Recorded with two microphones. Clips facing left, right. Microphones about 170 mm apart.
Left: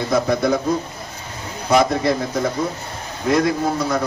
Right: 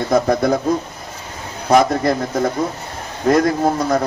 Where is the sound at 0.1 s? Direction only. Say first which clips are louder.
Right 3 dB; 45° right (ahead or behind).